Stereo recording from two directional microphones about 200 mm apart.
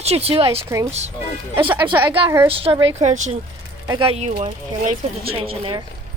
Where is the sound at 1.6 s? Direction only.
10° right (ahead or behind).